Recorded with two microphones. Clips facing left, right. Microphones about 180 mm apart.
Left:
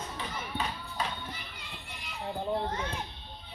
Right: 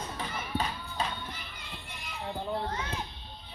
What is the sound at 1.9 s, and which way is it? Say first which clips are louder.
Music: right 1 dB; 45° right (ahead or behind).